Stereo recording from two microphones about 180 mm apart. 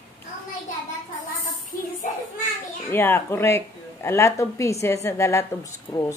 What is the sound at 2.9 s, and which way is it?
Speech, 15° left (ahead or behind).